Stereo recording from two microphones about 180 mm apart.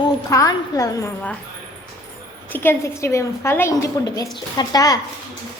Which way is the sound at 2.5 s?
15° left (ahead or behind).